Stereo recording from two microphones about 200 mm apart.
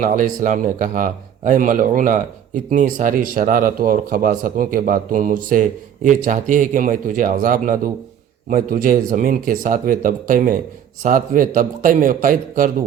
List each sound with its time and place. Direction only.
0.0 s speech: 40° right (ahead or behind)